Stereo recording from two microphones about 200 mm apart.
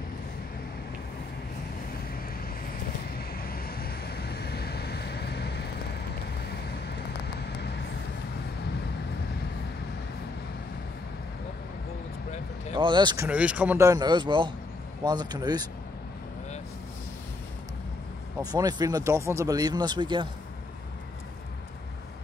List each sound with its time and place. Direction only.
3.2 s vehicle: 50° left (ahead or behind)
7.3 s vehicle: 55° left (ahead or behind)
12.7 s speech: 25° right (ahead or behind)
18.4 s speech: 20° right (ahead or behind)